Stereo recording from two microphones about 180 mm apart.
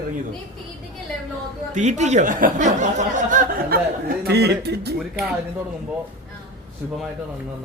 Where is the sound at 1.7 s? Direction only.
40° right (ahead or behind); by 4.9 s 65° right (ahead or behind).